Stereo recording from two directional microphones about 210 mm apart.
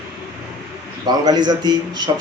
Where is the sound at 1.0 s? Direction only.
20° right (ahead or behind).